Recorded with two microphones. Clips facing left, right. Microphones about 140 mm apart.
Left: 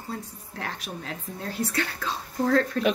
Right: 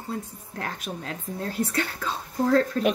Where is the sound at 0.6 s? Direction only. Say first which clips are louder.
Right 2 dB; 45° right (ahead or behind).